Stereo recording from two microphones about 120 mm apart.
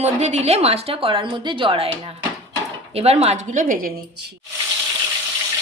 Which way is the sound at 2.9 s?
60° right (ahead or behind).